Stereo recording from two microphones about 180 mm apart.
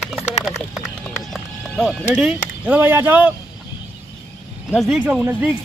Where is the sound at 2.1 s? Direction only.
10° right (ahead or behind).